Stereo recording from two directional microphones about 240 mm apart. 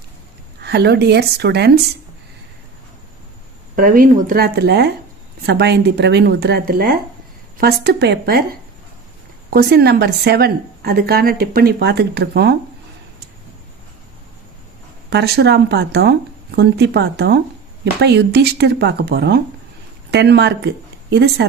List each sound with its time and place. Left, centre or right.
0.6 s speech: right
3.8 s a woman's voice: right
9.5 s a woman's voice: right
15.1 s speech: right